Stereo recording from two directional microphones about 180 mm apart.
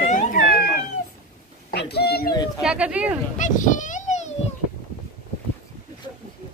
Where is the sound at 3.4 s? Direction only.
45° left (ahead or behind).